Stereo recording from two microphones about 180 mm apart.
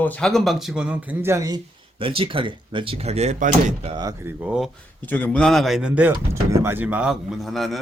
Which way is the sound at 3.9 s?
25° right (ahead or behind).